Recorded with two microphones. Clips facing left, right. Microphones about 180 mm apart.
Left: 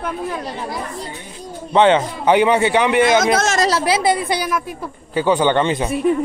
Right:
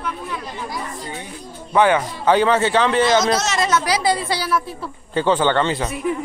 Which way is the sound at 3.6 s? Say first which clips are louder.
Left 2 dB; 30° left (ahead or behind).